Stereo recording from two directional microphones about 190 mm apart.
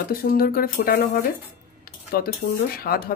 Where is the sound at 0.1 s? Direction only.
50° left (ahead or behind).